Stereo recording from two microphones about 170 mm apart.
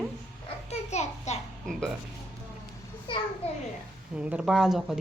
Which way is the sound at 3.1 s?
30° left (ahead or behind).